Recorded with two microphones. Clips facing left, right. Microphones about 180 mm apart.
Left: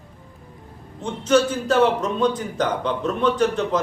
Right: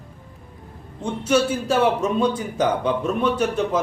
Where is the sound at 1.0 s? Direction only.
10° right (ahead or behind).